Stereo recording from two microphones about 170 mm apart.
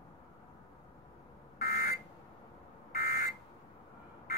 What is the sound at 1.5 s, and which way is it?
Fire alarm, 60° left (ahead or behind).